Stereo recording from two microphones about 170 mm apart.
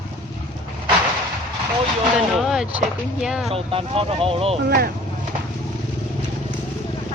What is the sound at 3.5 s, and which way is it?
Speech, 35° right (ahead or behind).